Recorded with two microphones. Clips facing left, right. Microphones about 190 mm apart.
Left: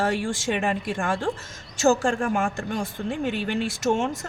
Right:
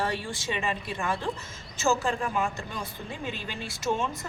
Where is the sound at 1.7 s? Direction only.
85° left.